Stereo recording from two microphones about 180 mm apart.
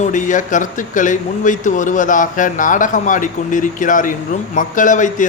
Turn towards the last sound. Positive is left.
turn(degrees=45)  # may be behind; listen again after turning